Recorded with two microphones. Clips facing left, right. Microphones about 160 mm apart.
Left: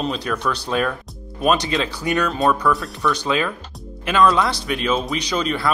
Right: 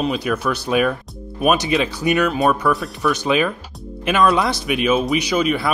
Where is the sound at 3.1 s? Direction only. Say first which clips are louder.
Right 5 dB; 15° right (ahead or behind).